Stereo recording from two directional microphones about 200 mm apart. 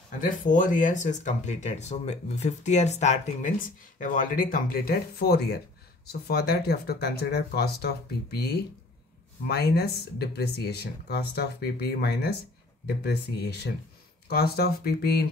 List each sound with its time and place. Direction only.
0.2 s speech: 40° left (ahead or behind)